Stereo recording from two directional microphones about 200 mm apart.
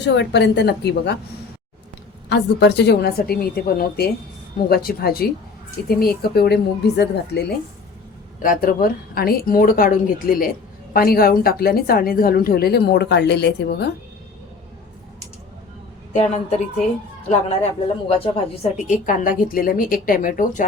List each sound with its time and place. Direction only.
0.0 s a woman's voice: 60° left (ahead or behind)
2.3 s a woman's voice: 60° left (ahead or behind)
8.4 s speech: 45° left (ahead or behind)
17.2 s speech: 30° left (ahead or behind)